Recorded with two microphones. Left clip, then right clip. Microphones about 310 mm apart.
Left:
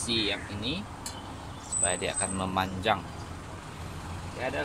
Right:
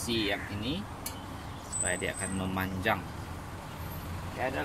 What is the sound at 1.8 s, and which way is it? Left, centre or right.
Speech, centre.